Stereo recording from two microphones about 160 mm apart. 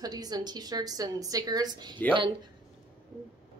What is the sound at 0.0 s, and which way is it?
A woman's voice, 25° right (ahead or behind).